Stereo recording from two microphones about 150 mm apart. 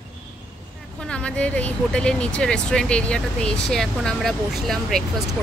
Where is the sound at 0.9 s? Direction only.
5° left (ahead or behind).